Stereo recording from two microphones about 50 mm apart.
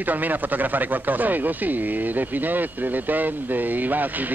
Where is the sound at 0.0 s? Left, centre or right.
Right.